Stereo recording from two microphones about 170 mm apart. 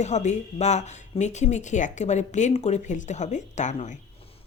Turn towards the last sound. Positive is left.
turn(degrees=45)  # may be behind; listen again after turning